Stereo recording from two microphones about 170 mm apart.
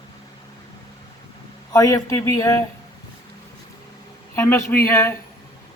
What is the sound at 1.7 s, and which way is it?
Speech, 20° left (ahead or behind).